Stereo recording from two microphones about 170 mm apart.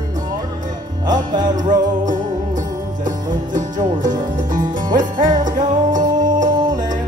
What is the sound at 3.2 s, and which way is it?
Music, 50° right (ahead or behind).